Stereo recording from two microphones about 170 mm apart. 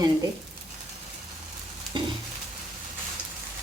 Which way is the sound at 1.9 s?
30° right (ahead or behind).